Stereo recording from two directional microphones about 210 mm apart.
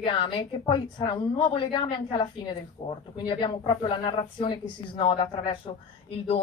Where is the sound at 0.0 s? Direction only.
25° left (ahead or behind).